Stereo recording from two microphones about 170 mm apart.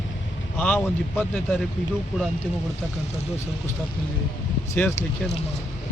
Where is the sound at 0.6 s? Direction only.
5° left (ahead or behind).